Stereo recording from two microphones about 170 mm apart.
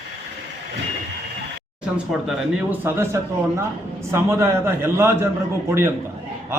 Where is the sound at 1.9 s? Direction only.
5° right (ahead or behind).